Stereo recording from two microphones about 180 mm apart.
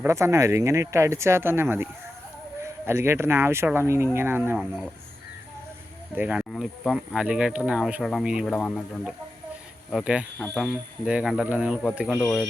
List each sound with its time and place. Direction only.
0.0 s speech: 15° right (ahead or behind)
6.1 s speech: 5° right (ahead or behind)